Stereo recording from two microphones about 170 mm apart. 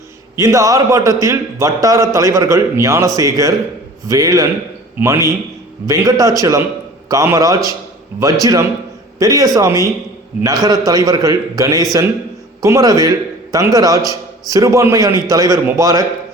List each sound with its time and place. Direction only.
0.3 s a man's voice: 20° right (ahead or behind)